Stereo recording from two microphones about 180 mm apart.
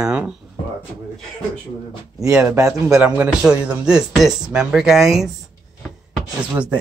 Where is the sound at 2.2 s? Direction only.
10° right (ahead or behind).